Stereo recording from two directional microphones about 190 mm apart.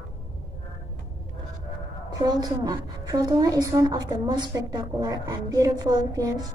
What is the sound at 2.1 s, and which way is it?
A woman's voice, 20° right (ahead or behind).